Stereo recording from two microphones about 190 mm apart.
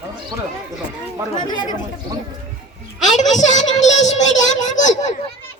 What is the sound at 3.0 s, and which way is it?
A woman's voice, 40° left (ahead or behind).